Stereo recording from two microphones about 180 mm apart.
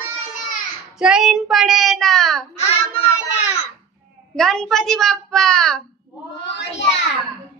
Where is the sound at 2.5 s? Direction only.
35° left (ahead or behind).